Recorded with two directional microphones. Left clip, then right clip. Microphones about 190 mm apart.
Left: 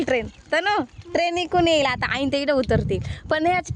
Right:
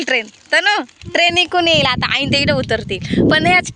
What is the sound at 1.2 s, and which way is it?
Speech, 5° right (ahead or behind).